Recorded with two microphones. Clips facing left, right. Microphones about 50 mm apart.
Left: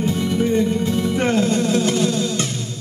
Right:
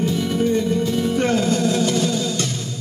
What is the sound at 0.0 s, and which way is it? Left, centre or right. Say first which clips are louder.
Music: even; centre.